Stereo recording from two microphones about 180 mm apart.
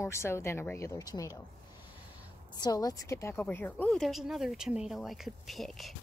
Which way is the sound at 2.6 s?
20° left (ahead or behind).